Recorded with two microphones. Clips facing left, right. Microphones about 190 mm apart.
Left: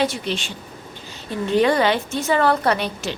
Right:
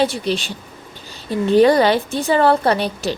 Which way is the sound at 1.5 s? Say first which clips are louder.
Right 5 dB; 35° right (ahead or behind).